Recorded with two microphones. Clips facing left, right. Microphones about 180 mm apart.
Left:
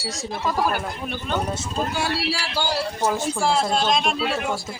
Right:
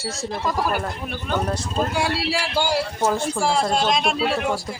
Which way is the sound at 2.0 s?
25° right (ahead or behind).